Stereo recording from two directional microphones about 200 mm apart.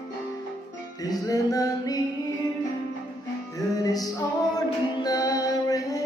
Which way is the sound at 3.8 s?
20° left (ahead or behind).